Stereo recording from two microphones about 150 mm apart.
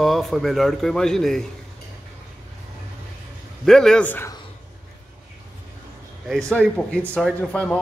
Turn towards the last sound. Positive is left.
turn(degrees=5)  # may be behind; listen again after turning